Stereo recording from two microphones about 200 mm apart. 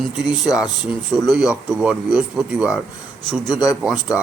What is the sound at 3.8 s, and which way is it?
Speech, 5° right (ahead or behind).